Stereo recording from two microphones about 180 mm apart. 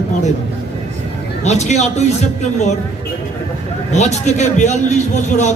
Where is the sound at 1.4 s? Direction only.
40° left (ahead or behind).